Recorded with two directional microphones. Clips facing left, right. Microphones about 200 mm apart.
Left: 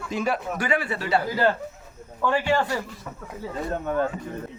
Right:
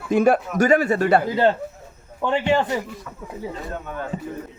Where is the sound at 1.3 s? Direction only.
25° right (ahead or behind).